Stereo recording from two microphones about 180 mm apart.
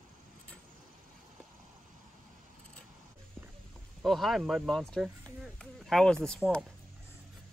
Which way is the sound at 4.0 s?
Centre (ahead or behind).